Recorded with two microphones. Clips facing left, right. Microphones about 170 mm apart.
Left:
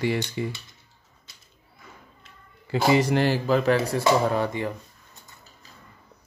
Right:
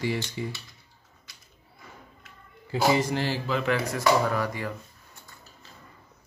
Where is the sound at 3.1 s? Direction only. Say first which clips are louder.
Left 6 dB; 60° left (ahead or behind).